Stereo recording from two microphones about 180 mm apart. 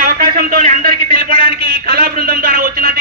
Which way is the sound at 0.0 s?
55° right (ahead or behind).